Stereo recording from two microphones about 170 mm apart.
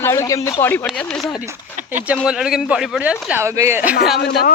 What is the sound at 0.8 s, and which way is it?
Speech, centre (ahead or behind).